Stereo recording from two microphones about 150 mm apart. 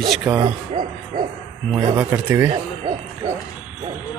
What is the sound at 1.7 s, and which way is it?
Speech, 10° right (ahead or behind).